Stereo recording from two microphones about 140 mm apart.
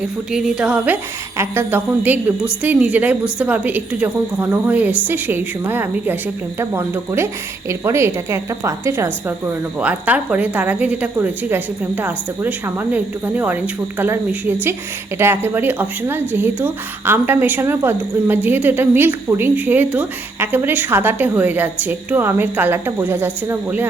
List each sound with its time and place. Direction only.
0.3 s a woman's voice: 5° right (ahead or behind)